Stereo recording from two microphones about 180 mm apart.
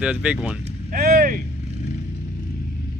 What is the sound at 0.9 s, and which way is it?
Speech, 55° right (ahead or behind).